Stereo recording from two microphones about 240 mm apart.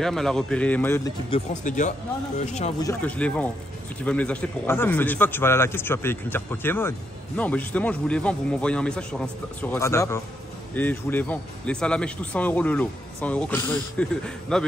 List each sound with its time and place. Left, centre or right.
0.0 s speech: centre
1.3 s speech: left
2.8 s speech: centre